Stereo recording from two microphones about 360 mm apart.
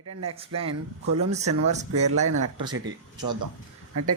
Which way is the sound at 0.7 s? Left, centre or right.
Right.